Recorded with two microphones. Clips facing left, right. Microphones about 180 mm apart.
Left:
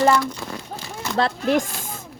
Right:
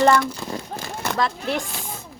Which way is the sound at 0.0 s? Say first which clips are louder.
Right 1 dB; 5° left (ahead or behind).